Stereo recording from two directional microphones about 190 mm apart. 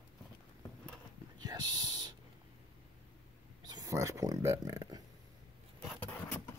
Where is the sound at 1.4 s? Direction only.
20° right (ahead or behind).